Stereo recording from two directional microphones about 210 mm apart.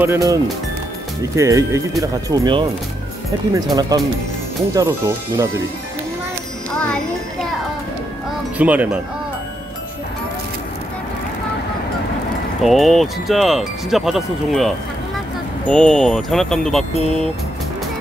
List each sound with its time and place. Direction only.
0.0 s speech: 15° right (ahead or behind)
6.7 s music: 5° left (ahead or behind)
8.5 s speech: 5° right (ahead or behind)
12.6 s speech: centre (ahead or behind)
15.7 s speech: 5° left (ahead or behind)